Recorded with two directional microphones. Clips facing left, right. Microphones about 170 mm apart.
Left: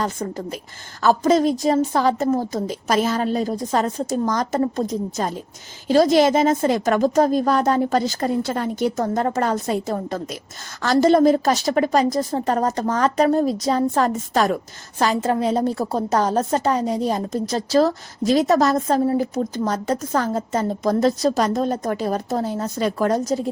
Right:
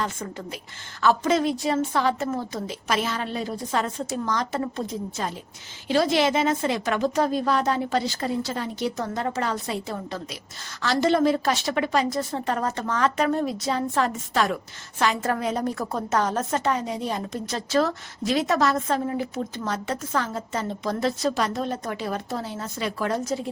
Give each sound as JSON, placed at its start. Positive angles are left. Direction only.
{"t": 0.0, "sound": "a woman's voice", "side_deg": 40}
{"t": 15.2, "sound": "a woman's voice", "side_deg": 30}